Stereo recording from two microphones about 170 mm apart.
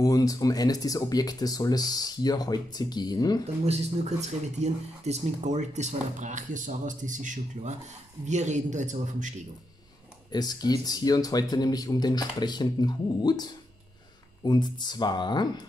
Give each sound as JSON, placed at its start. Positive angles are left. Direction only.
{"t": 0.0, "sound": "speech", "side_deg": 20}
{"t": 3.6, "sound": "speech", "side_deg": -40}
{"t": 10.3, "sound": "speech", "side_deg": 25}